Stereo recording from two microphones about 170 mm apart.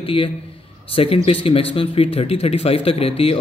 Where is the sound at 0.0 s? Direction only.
30° left (ahead or behind).